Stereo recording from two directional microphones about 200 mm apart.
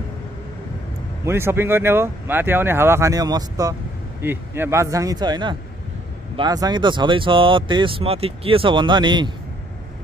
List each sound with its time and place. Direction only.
1.2 s speech: 10° right (ahead or behind)